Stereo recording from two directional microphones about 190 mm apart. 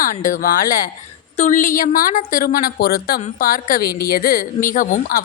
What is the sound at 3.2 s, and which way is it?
A woman's voice, 40° left (ahead or behind).